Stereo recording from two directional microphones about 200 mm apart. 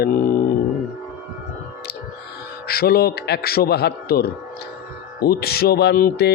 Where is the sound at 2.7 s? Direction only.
50° left (ahead or behind).